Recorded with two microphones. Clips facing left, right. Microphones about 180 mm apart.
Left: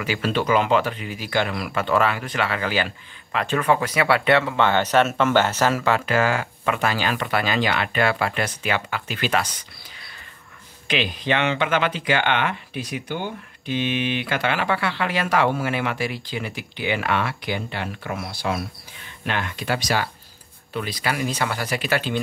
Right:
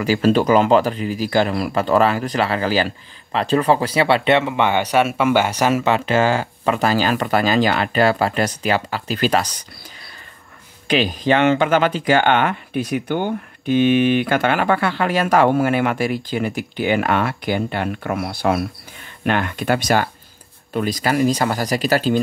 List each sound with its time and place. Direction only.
0.0 s speech: 40° right (ahead or behind)
10.9 s speech: 40° right (ahead or behind)